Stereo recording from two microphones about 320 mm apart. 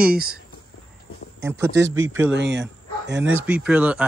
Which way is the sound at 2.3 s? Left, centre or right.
Right.